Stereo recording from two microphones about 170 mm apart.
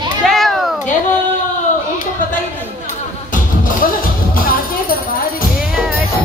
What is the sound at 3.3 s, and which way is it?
Music, 55° left (ahead or behind).